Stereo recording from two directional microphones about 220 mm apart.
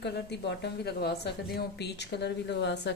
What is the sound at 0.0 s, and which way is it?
A woman's voice, 50° left (ahead or behind).